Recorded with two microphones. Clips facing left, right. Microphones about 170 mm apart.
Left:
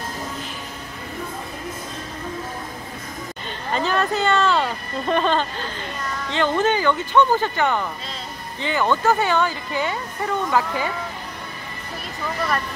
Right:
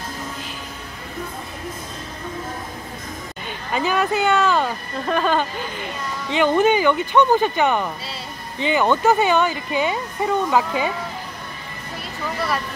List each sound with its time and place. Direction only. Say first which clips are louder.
3.4 s a woman's voice: right 1 dB; 10° right (ahead or behind)